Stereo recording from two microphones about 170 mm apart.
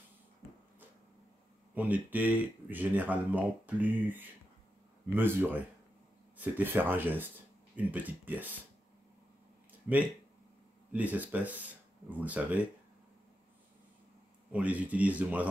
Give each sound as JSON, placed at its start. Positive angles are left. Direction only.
{"t": 1.8, "sound": "speech", "side_deg": -10}
{"t": 10.9, "sound": "speech", "side_deg": -10}
{"t": 14.5, "sound": "speech", "side_deg": -10}